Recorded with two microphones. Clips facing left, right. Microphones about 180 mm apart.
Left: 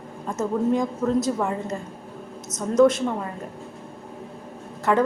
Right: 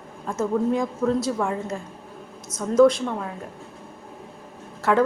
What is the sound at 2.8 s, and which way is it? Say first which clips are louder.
Speech: right 1 dB; 5° left (ahead or behind).